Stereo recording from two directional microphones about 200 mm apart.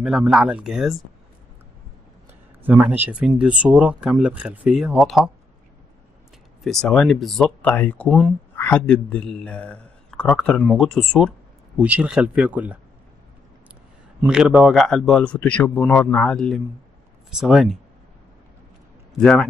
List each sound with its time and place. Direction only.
0.0 s speech: 5° right (ahead or behind)
2.6 s speech: 10° right (ahead or behind)
6.6 s speech: centre (ahead or behind)
8.1 s speech: 5° right (ahead or behind)
8.5 s a man's voice: 10° left (ahead or behind); by 12.7 s 5° right (ahead or behind)
14.2 s speech: 5° right (ahead or behind)
19.1 s speech: 5° left (ahead or behind)